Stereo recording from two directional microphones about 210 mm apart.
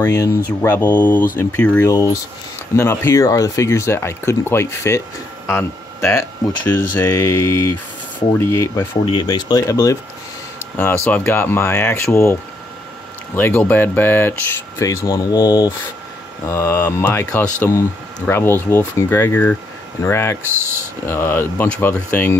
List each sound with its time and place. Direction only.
0.0 s speech: 15° left (ahead or behind)
11.1 s speech: 10° left (ahead or behind)
13.4 s speech: 10° left (ahead or behind)
20.5 s speech: 10° right (ahead or behind)
21.1 s speech: 10° left (ahead or behind)